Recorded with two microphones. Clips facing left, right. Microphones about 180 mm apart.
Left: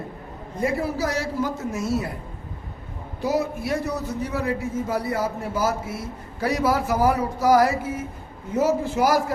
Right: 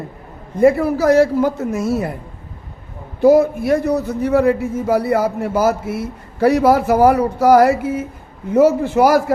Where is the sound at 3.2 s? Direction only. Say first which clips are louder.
Right 12 dB; 55° right (ahead or behind).